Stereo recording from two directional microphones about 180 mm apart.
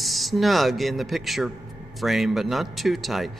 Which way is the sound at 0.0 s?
Centre (ahead or behind).